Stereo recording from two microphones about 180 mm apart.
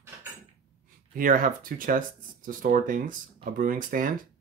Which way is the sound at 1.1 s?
50° right (ahead or behind).